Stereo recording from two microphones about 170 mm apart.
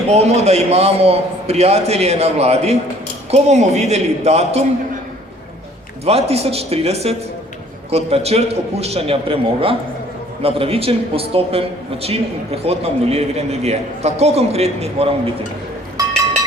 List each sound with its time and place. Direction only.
0.1 s a man's voice: 40° right (ahead or behind)
6.1 s a man's voice: 35° right (ahead or behind)